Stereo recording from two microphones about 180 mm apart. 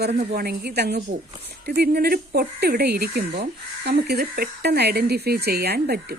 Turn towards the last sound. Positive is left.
turn(degrees=-60)  # may be behind; listen again after turning